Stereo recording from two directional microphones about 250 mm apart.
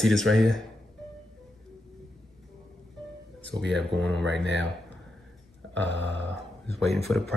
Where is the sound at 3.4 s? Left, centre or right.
Right.